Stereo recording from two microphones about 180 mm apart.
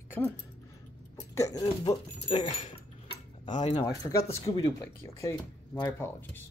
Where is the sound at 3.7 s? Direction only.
20° left (ahead or behind).